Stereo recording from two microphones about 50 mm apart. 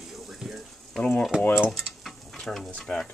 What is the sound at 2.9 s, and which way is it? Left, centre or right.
Stir, left.